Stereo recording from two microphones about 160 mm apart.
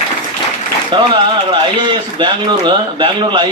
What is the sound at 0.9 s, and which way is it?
A man's voice, 30° right (ahead or behind).